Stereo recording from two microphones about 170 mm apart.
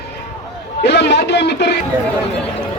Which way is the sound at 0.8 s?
90° left.